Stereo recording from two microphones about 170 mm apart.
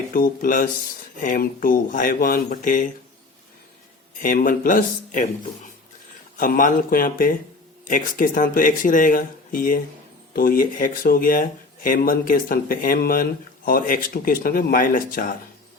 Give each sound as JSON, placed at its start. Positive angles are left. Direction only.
{"t": 0.1, "sound": "speech", "side_deg": 55}
{"t": 4.2, "sound": "speech", "side_deg": 55}
{"t": 6.3, "sound": "speech", "side_deg": 55}